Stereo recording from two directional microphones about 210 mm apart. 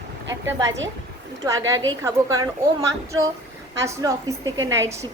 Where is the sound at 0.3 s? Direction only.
15° right (ahead or behind).